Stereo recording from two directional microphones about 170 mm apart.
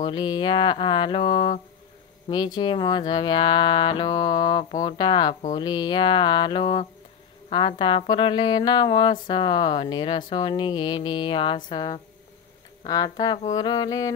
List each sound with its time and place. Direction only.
0.0 s speech: 25° left (ahead or behind)